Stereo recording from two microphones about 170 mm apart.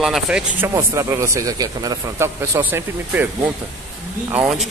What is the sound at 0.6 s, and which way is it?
A man's voice, 20° right (ahead or behind).